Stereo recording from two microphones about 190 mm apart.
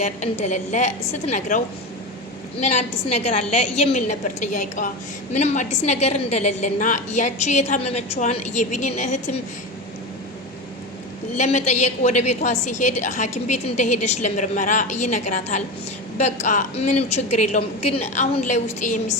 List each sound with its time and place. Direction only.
0.0 s a woman's voice: 35° left (ahead or behind)
11.3 s a woman's voice: 35° left (ahead or behind)